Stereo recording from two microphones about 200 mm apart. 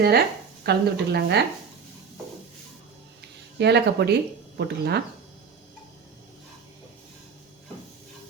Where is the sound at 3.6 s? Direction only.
55° right (ahead or behind).